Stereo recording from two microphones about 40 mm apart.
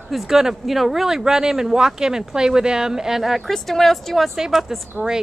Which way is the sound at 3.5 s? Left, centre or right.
Centre.